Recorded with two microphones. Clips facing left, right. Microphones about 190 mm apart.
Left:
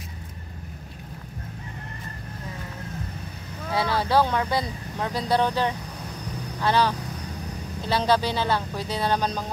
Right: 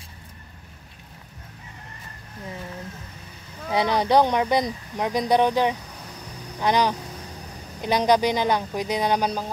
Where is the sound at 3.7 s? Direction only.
20° right (ahead or behind).